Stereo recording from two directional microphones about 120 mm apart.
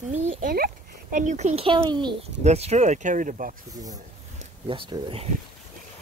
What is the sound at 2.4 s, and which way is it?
Speech, 65° right (ahead or behind).